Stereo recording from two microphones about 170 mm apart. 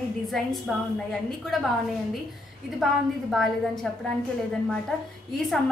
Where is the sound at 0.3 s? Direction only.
Centre (ahead or behind).